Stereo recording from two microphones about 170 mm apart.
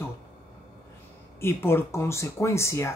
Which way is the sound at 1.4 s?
15° left (ahead or behind).